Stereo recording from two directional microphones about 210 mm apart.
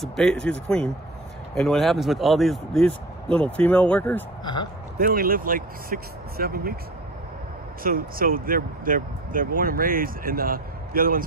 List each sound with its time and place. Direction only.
0.0 s speech: centre (ahead or behind)
5.0 s speech: 45° right (ahead or behind)
7.8 s speech: 45° right (ahead or behind)